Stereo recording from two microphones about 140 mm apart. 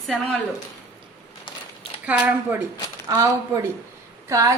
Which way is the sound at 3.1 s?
25° right (ahead or behind).